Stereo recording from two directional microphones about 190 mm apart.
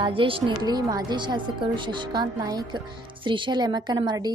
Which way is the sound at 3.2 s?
25° right (ahead or behind).